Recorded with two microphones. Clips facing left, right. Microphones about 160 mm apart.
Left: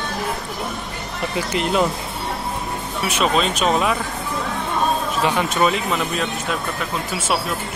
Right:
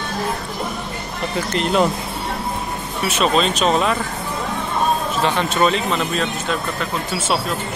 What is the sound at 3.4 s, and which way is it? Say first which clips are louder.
Speech: right 1 dB; 10° left (ahead or behind).